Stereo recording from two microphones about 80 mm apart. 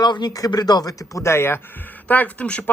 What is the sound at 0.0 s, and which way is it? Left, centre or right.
Speech, left.